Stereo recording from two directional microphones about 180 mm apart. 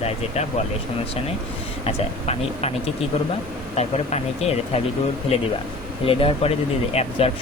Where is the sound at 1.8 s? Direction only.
35° left (ahead or behind).